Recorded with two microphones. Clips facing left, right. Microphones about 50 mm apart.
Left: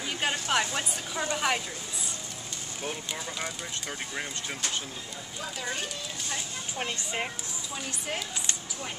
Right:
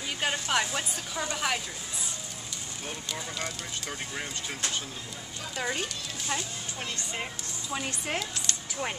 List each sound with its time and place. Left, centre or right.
0.2 s speech: centre
2.8 s speech: centre
6.8 s speech: left
7.7 s a woman's voice: right